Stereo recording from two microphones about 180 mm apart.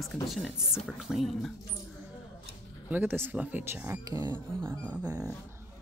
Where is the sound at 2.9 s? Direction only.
10° right (ahead or behind).